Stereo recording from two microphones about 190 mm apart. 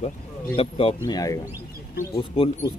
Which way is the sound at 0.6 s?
30° left (ahead or behind).